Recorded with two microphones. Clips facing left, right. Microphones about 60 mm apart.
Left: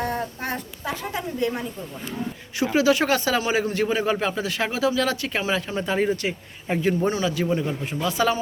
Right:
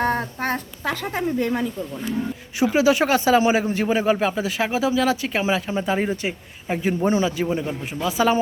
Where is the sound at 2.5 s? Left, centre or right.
Centre.